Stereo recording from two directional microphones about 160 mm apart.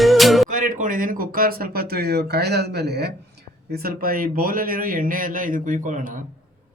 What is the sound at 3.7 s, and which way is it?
A man's voice, 70° right (ahead or behind).